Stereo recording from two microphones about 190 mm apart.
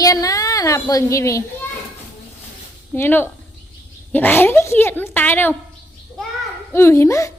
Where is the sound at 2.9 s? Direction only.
10° left (ahead or behind).